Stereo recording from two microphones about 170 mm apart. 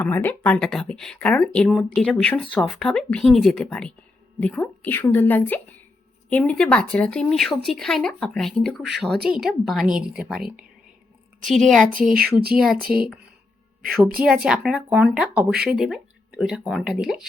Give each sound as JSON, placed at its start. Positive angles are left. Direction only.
{"t": 0.0, "sound": "a woman's voice", "side_deg": 10}
{"t": 12.1, "sound": "speech", "side_deg": -65}
{"t": 12.5, "sound": "speech", "side_deg": 0}